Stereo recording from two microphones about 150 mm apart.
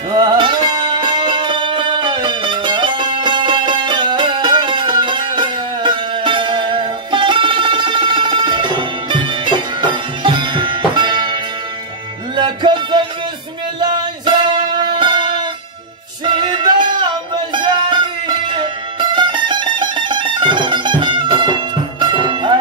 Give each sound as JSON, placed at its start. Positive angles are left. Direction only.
{"t": 0.1, "sound": "music", "side_deg": -30}
{"t": 12.4, "sound": "music", "side_deg": -30}